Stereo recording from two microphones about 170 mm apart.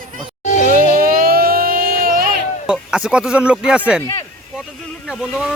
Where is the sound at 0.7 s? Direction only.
60° right (ahead or behind).